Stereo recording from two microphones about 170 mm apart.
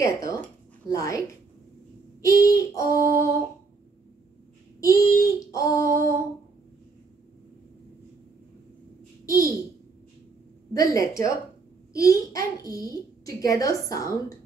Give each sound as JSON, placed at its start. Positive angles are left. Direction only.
{"t": 0.0, "sound": "a woman's voice", "side_deg": 15}
{"t": 2.2, "sound": "a child's voice", "side_deg": 20}
{"t": 3.0, "sound": "a sound", "side_deg": -55}
{"t": 4.7, "sound": "a child's voice", "side_deg": 20}
{"t": 5.9, "sound": "humming", "side_deg": 15}
{"t": 10.7, "sound": "a child's voice", "side_deg": 20}